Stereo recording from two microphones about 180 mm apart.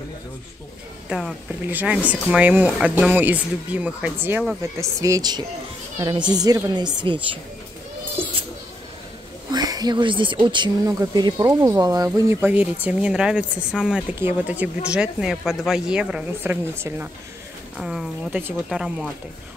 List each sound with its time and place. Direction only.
1.0 s speech: 5° right (ahead or behind); by 7.2 s 25° right (ahead or behind)
9.5 s speech: 20° right (ahead or behind); by 19.0 s 5° right (ahead or behind)